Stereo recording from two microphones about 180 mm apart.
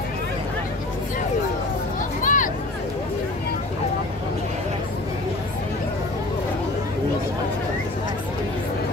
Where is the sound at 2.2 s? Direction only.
45° left (ahead or behind).